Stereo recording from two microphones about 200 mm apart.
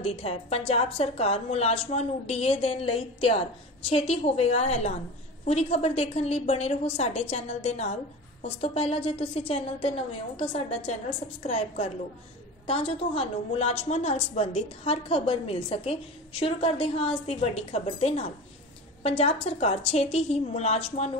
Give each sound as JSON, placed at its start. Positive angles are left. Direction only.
{"t": 0.0, "sound": "a woman's voice", "side_deg": 30}